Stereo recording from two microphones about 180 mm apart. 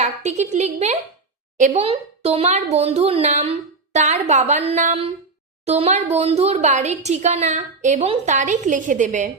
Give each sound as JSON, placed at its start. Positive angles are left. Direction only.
{"t": 0.0, "sound": "speech", "side_deg": -40}